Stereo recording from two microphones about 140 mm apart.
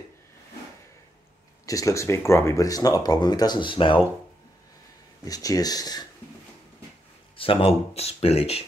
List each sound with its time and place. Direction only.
1.7 s speech: 25° left (ahead or behind)
5.2 s speech: 25° left (ahead or behind)
7.3 s speech: 40° left (ahead or behind)